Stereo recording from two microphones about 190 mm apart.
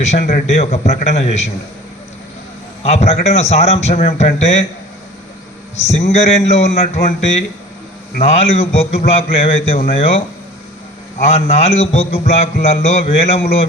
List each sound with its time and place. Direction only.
0.0 s a man's voice: 35° left (ahead or behind)
2.8 s a man's voice: 35° left (ahead or behind)
5.8 s a man's voice: 35° left (ahead or behind)
11.3 s a man's voice: 35° left (ahead or behind)